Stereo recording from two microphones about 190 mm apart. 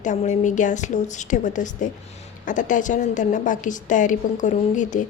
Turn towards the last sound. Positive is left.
turn(degrees=40)  # may be behind; listen again after turning